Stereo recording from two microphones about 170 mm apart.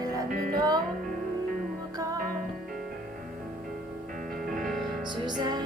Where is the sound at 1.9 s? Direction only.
20° right (ahead or behind).